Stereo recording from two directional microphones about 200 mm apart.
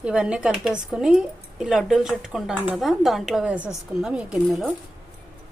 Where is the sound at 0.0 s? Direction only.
5° right (ahead or behind).